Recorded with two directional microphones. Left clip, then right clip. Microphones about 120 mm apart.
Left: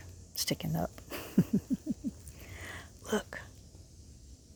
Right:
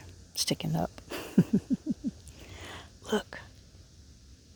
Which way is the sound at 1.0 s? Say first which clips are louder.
Right 4 dB; 50° right (ahead or behind).